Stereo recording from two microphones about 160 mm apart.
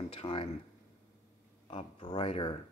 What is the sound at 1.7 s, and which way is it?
Speech, 30° left (ahead or behind).